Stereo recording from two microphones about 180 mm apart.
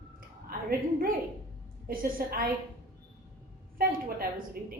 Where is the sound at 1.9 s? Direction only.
50° right (ahead or behind).